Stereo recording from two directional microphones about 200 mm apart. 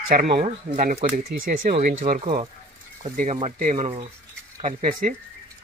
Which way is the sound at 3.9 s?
30° right (ahead or behind).